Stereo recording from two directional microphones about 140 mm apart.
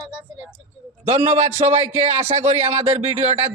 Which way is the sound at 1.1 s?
55° right (ahead or behind).